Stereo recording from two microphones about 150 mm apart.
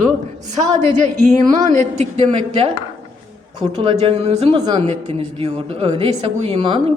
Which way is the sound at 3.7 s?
35° right (ahead or behind).